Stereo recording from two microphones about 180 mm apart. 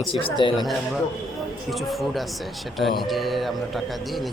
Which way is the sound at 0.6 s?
Centre (ahead or behind).